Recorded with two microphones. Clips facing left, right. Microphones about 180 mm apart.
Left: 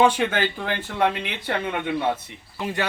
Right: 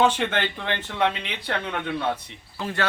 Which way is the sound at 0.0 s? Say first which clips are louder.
Left 2 dB; 10° left (ahead or behind).